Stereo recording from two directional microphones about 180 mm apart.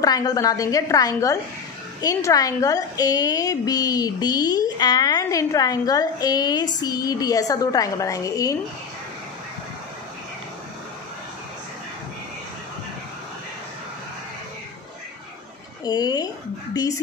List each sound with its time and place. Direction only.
0.0 s a woman's voice: 20° left (ahead or behind)
15.8 s a woman's voice: 20° left (ahead or behind)